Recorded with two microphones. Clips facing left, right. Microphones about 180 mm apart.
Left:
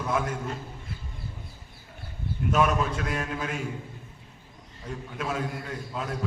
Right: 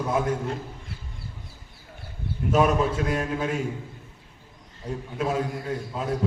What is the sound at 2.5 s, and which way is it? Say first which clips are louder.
Speech: right 3 dB; 40° right (ahead or behind).